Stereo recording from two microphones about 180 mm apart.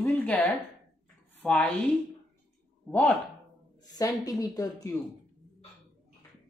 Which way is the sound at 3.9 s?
20° left (ahead or behind).